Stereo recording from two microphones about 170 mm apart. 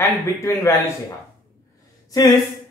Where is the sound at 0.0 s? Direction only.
15° left (ahead or behind).